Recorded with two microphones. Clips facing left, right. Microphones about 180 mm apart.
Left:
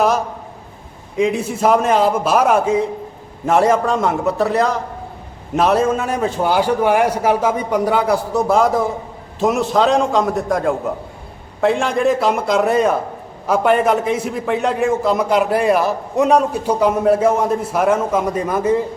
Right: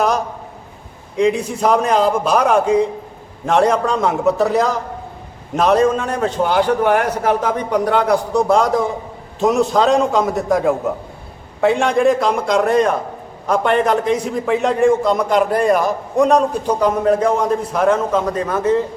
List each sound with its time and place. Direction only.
1.1 s a man's voice: 5° left (ahead or behind)